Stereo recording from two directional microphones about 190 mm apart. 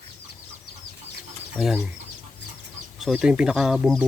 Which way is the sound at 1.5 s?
Centre (ahead or behind).